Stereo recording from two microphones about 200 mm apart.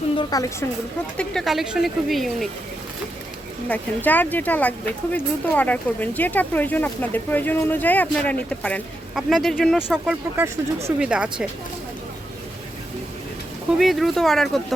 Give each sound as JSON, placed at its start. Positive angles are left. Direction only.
{"t": 0.2, "sound": "a woman's voice", "side_deg": 20}
{"t": 1.1, "sound": "speech", "side_deg": 5}
{"t": 3.7, "sound": "speech", "side_deg": 10}
{"t": 13.7, "sound": "speech", "side_deg": 0}